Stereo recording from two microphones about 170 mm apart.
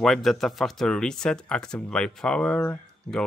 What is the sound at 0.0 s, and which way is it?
Speech, centre (ahead or behind).